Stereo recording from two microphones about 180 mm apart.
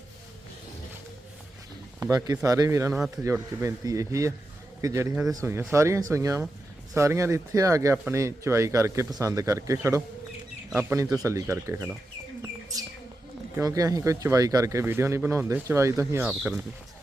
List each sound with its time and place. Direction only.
2.0 s speech: 20° right (ahead or behind)
13.6 s speech: 20° right (ahead or behind)